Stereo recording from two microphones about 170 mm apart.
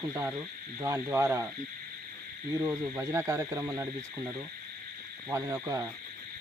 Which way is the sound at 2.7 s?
15° right (ahead or behind).